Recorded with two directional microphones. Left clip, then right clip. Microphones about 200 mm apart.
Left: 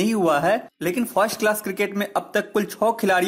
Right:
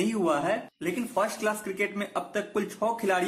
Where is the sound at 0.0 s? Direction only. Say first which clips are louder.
Left 7 dB; 40° left (ahead or behind).